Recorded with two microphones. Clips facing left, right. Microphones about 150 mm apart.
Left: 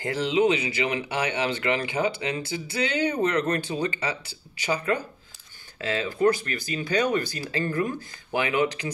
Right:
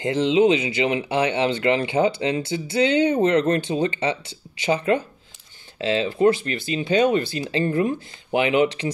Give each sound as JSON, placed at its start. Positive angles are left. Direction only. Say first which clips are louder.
{"t": 0.0, "sound": "speech", "louder": "right 5 dB", "side_deg": -20}